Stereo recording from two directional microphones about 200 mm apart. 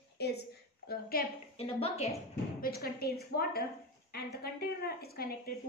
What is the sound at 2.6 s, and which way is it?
A woman's voice, 50° left (ahead or behind).